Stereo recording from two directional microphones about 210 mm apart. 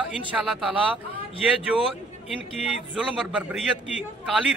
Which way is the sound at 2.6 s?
5° right (ahead or behind).